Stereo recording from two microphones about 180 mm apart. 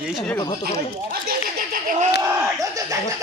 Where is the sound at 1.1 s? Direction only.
55° right (ahead or behind).